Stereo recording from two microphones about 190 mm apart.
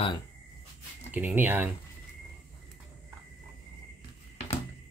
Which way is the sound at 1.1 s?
10° right (ahead or behind).